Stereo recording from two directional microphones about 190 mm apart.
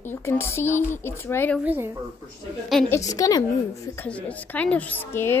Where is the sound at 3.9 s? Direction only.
5° left (ahead or behind).